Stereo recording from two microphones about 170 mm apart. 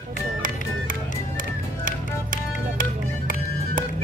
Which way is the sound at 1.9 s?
55° right (ahead or behind).